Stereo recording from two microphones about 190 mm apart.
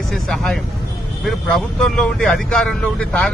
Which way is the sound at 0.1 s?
Centre (ahead or behind).